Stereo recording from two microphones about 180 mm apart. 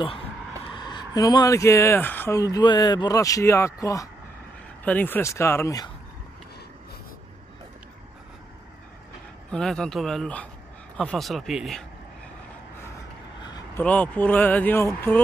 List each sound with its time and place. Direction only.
0.7 s speech: 25° left (ahead or behind)
9.5 s speech: 5° left (ahead or behind)
13.7 s speech: 10° left (ahead or behind)